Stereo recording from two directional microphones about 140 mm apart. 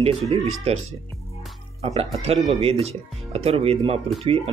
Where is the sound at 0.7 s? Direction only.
50° right (ahead or behind).